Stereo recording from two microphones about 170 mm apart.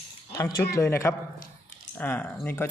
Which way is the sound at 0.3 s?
20° left (ahead or behind).